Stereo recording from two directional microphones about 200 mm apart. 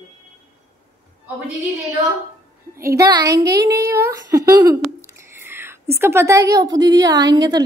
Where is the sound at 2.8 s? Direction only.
15° right (ahead or behind).